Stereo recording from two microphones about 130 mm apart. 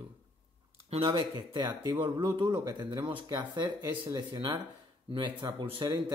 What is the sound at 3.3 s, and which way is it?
Speech, 30° right (ahead or behind).